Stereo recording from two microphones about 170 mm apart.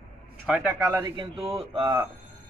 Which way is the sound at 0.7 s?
20° right (ahead or behind).